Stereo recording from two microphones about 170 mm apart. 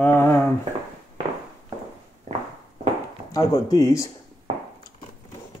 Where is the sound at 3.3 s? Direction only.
20° left (ahead or behind).